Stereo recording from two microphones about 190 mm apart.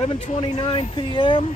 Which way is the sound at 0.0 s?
30° left (ahead or behind).